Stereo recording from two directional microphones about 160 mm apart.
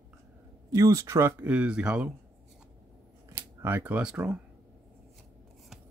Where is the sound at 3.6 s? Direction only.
15° right (ahead or behind).